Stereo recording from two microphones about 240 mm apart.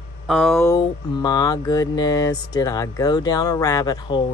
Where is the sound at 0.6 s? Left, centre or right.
Centre.